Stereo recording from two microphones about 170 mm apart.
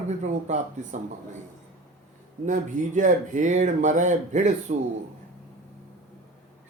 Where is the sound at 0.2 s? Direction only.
45° right (ahead or behind).